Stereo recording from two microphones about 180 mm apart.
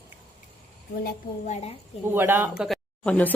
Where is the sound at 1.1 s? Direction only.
40° left (ahead or behind).